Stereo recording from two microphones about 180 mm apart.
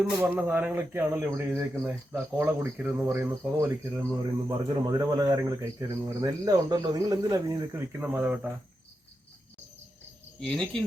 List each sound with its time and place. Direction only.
0.2 s speech: 10° right (ahead or behind)
10.4 s speech: centre (ahead or behind)